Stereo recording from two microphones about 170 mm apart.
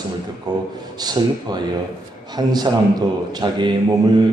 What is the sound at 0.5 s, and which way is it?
A man's voice, 25° right (ahead or behind).